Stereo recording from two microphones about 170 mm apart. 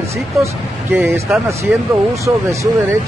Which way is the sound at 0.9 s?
15° right (ahead or behind).